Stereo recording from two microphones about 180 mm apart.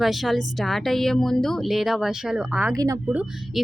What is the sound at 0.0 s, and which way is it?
Speech, centre (ahead or behind).